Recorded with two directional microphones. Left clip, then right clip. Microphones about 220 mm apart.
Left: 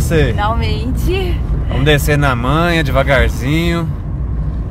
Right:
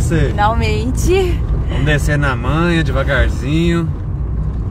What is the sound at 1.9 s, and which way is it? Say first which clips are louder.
Speech: left 4 dB; 50° left (ahead or behind).